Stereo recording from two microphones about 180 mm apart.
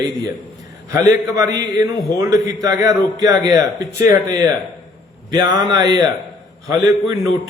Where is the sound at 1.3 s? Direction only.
20° right (ahead or behind).